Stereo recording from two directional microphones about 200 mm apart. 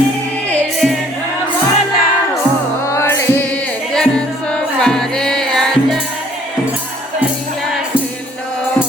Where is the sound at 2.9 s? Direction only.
15° left (ahead or behind).